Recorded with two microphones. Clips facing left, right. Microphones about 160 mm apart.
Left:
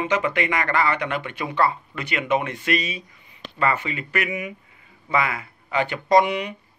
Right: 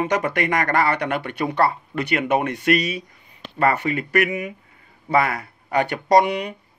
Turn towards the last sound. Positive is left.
turn(degrees=-50)  # may be behind; listen again after turning